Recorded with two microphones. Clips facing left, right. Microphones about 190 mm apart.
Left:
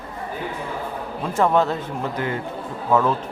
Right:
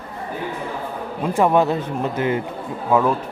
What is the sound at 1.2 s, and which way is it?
A man's voice, 15° right (ahead or behind).